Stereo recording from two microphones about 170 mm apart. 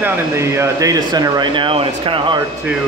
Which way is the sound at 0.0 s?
15° right (ahead or behind).